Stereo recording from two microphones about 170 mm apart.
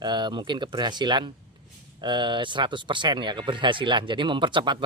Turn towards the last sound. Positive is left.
turn(degrees=-25)  # may be behind; listen again after turning